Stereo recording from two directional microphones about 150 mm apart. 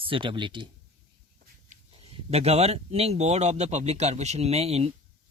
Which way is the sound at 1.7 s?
45° right (ahead or behind).